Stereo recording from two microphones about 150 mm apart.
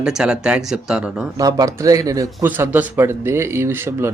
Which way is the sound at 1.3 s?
25° right (ahead or behind).